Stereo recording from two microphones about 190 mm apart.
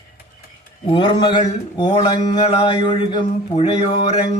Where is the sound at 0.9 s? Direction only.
25° left (ahead or behind).